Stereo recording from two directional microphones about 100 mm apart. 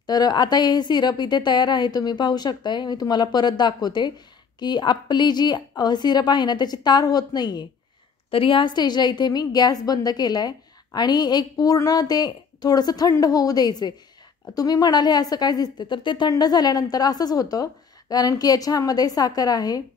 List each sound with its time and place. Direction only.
0.0 s a woman's voice: 40° left (ahead or behind)
8.3 s a woman's voice: 60° left (ahead or behind); by 19.8 s 40° left (ahead or behind)